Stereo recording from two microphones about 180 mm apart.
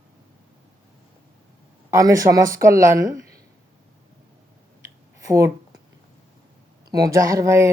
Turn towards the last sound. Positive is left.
turn(degrees=-15)  # may be behind; listen again after turning